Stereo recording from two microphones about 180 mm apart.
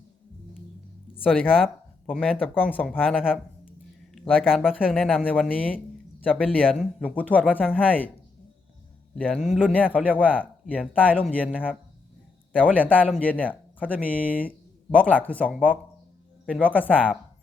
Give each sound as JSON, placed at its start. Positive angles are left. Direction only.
{"t": 1.6, "sound": "a sound", "side_deg": -5}
{"t": 2.2, "sound": "speech", "side_deg": 10}
{"t": 9.1, "sound": "speech", "side_deg": 5}
{"t": 12.7, "sound": "speech", "side_deg": 10}